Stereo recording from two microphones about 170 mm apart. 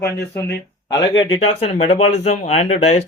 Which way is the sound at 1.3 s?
35° left (ahead or behind).